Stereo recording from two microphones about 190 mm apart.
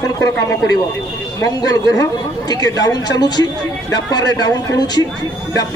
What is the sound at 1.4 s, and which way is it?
Speech, 20° left (ahead or behind).